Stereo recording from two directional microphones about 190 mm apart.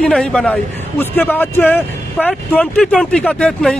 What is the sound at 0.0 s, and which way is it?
Speech, 5° left (ahead or behind).